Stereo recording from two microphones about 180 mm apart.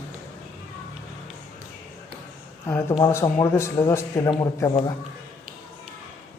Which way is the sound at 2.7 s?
15° left (ahead or behind).